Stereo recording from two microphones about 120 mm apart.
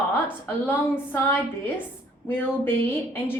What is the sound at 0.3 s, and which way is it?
A woman's voice, 15° left (ahead or behind).